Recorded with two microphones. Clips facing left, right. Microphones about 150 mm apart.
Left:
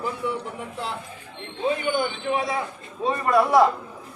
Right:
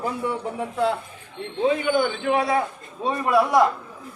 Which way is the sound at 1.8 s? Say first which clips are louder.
Right 3 dB; 90° right.